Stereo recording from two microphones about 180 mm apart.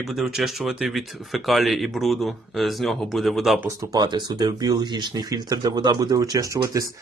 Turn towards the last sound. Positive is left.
turn(degrees=-20)  # may be behind; listen again after turning